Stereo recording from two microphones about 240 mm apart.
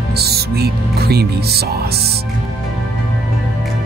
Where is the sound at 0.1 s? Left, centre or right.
Right.